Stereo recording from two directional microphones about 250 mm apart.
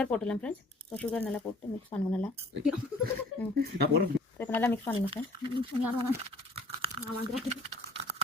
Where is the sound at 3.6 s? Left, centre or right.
Right.